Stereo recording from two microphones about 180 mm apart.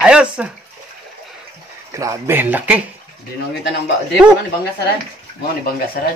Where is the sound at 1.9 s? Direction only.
15° right (ahead or behind).